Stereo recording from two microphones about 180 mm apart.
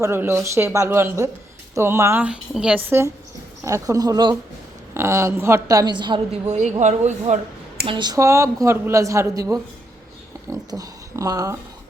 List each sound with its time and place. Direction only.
0.0 s a woman's voice: 15° right (ahead or behind)
6.5 s speech: 40° right (ahead or behind)
7.9 s a woman's voice: 25° right (ahead or behind)
10.7 s speech: 20° right (ahead or behind)